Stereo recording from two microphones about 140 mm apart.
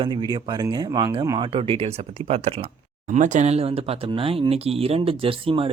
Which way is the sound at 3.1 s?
60° right (ahead or behind).